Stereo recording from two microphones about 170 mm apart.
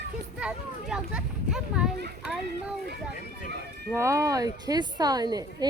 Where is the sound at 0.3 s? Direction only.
5° right (ahead or behind).